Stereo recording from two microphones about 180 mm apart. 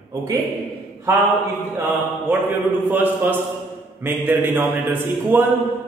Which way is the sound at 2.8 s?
10° right (ahead or behind).